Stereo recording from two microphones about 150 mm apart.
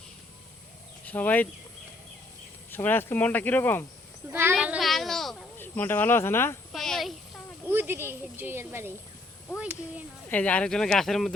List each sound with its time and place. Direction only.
1.0 s speech: 10° left (ahead or behind)
2.6 s speech: 15° left (ahead or behind)
4.3 s speech: 15° right (ahead or behind)
4.5 s a child's voice: 5° right (ahead or behind)
5.5 s speech: 15° left (ahead or behind)
6.7 s a sound: 5° left (ahead or behind)
7.7 s speech: 15° right (ahead or behind)
10.2 s speech: 10° left (ahead or behind)